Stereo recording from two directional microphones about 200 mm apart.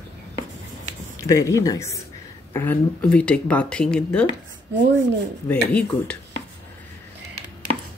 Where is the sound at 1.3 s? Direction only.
15° left (ahead or behind).